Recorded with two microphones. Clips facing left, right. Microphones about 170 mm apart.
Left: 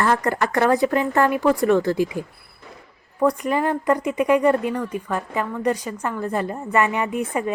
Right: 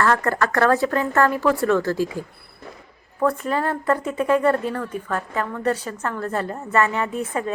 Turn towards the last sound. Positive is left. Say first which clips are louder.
# left 2 dB
turn(degrees=15)  # may be behind; listen again after turning